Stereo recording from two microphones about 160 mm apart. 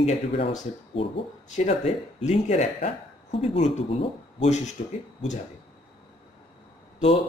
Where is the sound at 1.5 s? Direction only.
45° left (ahead or behind).